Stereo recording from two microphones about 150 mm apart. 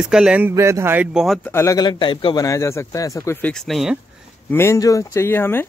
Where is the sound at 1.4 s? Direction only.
15° left (ahead or behind).